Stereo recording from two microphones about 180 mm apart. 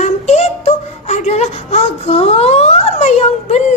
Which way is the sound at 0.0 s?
40° left (ahead or behind).